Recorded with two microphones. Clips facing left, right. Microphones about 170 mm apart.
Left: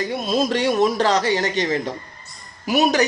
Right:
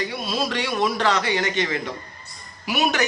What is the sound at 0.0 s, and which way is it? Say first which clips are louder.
A woman's voice: left 5 dB; 45° left (ahead or behind).